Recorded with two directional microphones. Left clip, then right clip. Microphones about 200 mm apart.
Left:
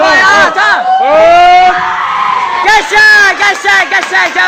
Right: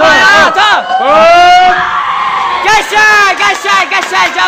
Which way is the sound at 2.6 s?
Centre (ahead or behind).